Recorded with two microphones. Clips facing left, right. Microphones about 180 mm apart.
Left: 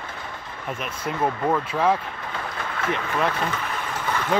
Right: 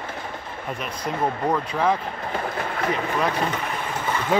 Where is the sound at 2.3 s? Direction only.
40° right (ahead or behind).